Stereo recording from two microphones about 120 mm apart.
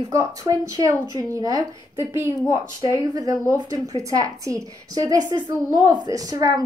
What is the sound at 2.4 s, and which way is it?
Speech, 30° left (ahead or behind).